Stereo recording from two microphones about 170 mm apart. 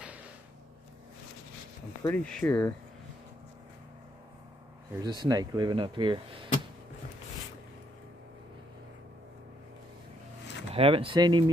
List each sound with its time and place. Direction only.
2.0 s speech: 10° left (ahead or behind)
4.9 s speech: 25° right (ahead or behind)
10.7 s speech: 35° right (ahead or behind)